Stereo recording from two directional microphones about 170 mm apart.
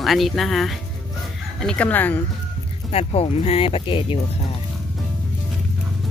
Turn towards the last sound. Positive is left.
turn(degrees=30)  # may be behind; listen again after turning